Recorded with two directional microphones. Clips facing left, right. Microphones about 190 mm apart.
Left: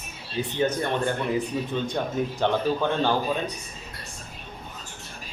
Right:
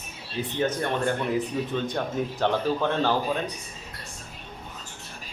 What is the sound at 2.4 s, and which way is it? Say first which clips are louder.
Speech: even; centre (ahead or behind).